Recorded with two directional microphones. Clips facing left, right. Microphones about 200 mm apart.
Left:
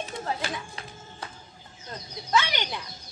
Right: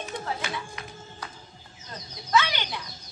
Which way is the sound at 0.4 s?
30° left (ahead or behind).